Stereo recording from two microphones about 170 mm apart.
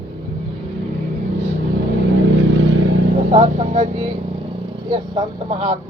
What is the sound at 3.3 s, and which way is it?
Vehicle, 40° right (ahead or behind).